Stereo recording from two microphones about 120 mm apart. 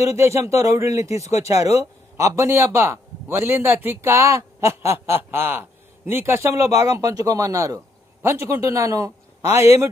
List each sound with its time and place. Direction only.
0.0 s a man's voice: 25° right (ahead or behind)